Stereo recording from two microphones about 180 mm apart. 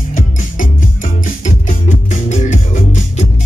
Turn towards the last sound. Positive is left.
turn(degrees=40)  # may be behind; listen again after turning